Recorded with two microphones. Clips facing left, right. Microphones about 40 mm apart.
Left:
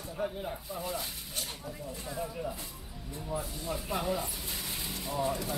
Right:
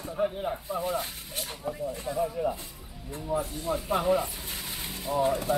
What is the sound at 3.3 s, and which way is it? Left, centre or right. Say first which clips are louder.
Speech: right 7 dB; right.